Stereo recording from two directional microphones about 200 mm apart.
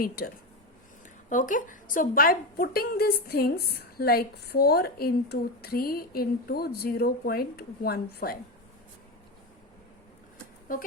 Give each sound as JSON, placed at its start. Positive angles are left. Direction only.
{"t": 1.3, "sound": "a woman's voice", "side_deg": 40}
{"t": 10.7, "sound": "a woman's voice", "side_deg": 45}